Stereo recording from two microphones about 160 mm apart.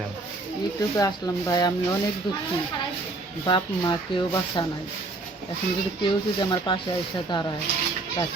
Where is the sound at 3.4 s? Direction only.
30° left (ahead or behind).